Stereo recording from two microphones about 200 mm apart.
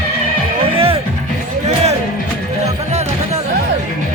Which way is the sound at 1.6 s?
35° right (ahead or behind).